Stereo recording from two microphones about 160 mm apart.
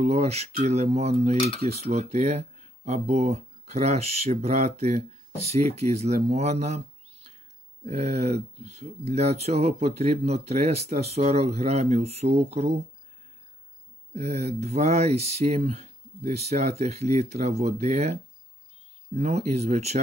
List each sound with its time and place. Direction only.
0.0 s speech: 40° right (ahead or behind)
1.3 s cutlery: 35° left (ahead or behind)
1.6 s speech: 45° right (ahead or behind)
7.8 s speech: 45° right (ahead or behind)
14.1 s speech: 45° right (ahead or behind)